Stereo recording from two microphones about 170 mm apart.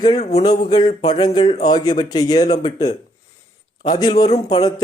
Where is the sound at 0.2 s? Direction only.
40° left (ahead or behind).